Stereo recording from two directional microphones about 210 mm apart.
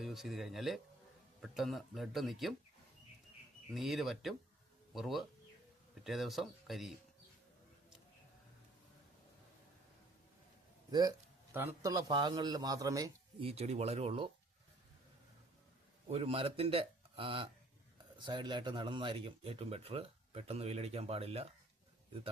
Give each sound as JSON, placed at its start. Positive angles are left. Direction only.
{"t": 0.0, "sound": "speech", "side_deg": 0}
{"t": 3.8, "sound": "speech", "side_deg": 0}
{"t": 11.5, "sound": "a man's voice", "side_deg": -15}
{"t": 13.4, "sound": "speech", "side_deg": -30}
{"t": 16.0, "sound": "speech", "side_deg": -30}